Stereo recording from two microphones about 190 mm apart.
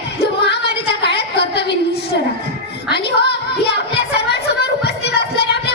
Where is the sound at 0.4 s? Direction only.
60° left (ahead or behind).